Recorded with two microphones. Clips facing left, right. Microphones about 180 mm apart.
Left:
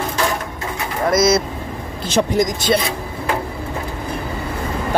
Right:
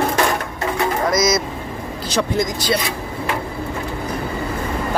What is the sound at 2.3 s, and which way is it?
Speech, 20° left (ahead or behind).